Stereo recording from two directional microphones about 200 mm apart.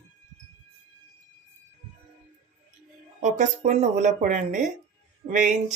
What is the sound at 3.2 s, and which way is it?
Speech, 35° right (ahead or behind).